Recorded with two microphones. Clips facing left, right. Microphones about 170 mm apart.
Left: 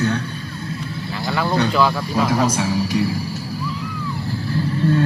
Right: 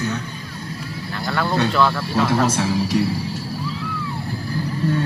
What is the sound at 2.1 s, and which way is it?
Speech, 10° left (ahead or behind).